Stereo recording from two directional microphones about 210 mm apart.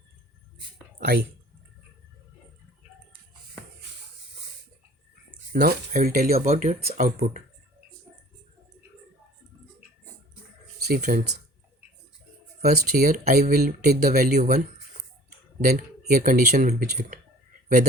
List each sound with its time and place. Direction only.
0.9 s speech: 50° right (ahead or behind)
5.5 s speech: 45° right (ahead or behind)
10.8 s a sound: 50° right (ahead or behind)
11.0 s speech: 40° right (ahead or behind)
12.6 s speech: 50° right (ahead or behind)
15.6 s speech: 45° right (ahead or behind)